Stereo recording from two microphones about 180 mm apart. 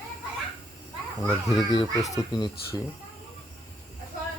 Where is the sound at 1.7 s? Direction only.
20° left (ahead or behind).